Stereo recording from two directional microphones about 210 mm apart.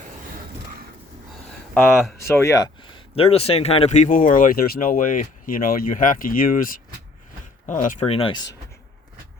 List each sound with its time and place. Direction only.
1.7 s speech: 10° left (ahead or behind); by 7.9 s 40° left (ahead or behind)
7.9 s speech: 25° left (ahead or behind)